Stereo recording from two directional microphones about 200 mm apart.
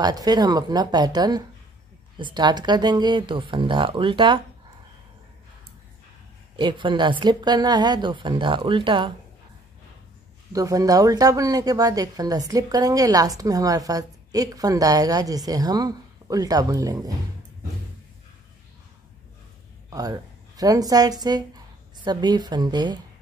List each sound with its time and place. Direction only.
0.0 s a woman's voice: 20° right (ahead or behind)
6.5 s a woman's voice: 25° right (ahead or behind)
10.5 s speech: 15° right (ahead or behind)
19.9 s a woman's voice: 20° right (ahead or behind)